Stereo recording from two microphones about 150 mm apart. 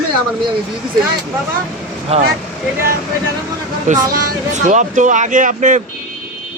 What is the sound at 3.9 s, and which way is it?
A man's voice, 55° right (ahead or behind).